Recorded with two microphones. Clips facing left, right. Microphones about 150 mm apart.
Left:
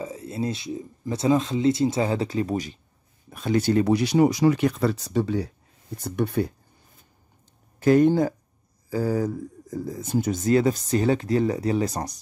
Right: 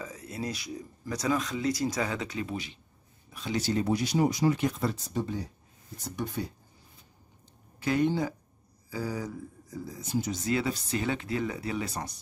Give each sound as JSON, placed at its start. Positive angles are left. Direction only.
{"t": 0.0, "sound": "speech", "side_deg": 25}
{"t": 6.0, "sound": "speech", "side_deg": 60}
{"t": 7.8, "sound": "speech", "side_deg": 45}